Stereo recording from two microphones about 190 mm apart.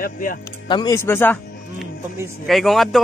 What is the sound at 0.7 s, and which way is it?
Speech, 20° left (ahead or behind).